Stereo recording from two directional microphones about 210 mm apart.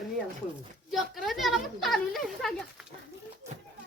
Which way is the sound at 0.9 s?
Centre (ahead or behind).